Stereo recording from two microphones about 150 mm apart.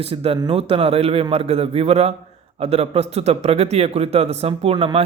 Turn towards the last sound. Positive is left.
turn(degrees=-35)  # may be behind; listen again after turning